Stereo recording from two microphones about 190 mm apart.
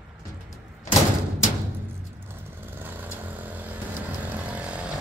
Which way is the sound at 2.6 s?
10° right (ahead or behind).